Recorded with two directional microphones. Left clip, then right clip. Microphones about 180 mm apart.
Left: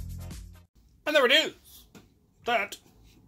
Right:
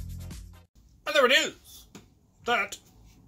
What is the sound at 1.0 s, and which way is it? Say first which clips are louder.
Throat clearing: even; 35° left (ahead or behind).